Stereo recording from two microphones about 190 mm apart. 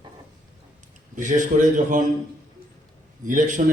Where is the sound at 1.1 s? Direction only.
40° right (ahead or behind).